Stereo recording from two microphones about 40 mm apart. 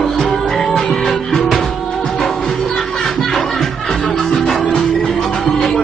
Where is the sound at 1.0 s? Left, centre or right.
Centre.